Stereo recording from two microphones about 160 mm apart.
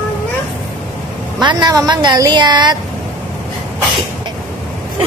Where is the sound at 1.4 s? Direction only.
25° right (ahead or behind).